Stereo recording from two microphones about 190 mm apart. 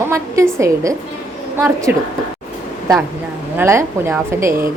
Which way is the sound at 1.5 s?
10° right (ahead or behind).